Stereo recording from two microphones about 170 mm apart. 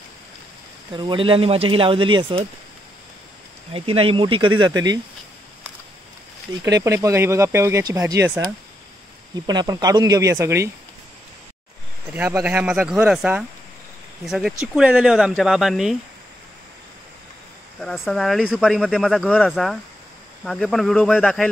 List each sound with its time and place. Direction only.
0.9 s speech: 30° right (ahead or behind)
3.7 s speech: 35° right (ahead or behind)
6.6 s speech: 15° right (ahead or behind)
9.3 s speech: 25° right (ahead or behind)
12.1 s speech: 10° right (ahead or behind)
17.7 s speech: centre (ahead or behind)